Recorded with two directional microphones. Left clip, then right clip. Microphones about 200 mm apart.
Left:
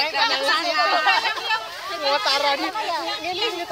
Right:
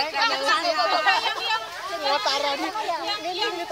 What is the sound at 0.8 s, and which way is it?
Speech, 20° left (ahead or behind).